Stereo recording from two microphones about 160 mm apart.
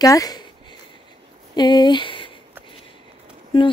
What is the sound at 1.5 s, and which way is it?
Speech, 25° left (ahead or behind).